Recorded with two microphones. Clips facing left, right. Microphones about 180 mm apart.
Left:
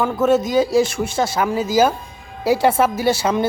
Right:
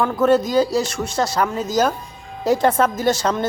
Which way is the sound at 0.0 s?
5° left (ahead or behind).